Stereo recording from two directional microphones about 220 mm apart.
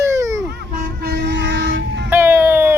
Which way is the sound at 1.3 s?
50° right (ahead or behind).